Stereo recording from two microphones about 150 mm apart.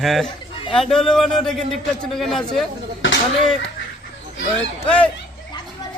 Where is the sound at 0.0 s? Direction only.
Centre (ahead or behind).